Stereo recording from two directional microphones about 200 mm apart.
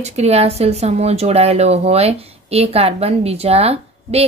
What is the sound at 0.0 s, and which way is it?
A woman's voice, 35° right (ahead or behind).